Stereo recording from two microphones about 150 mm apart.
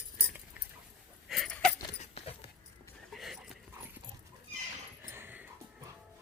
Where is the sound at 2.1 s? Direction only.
40° left (ahead or behind).